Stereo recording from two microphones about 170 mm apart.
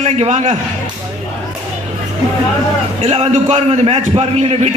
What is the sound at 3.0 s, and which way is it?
A man's voice, 40° right (ahead or behind).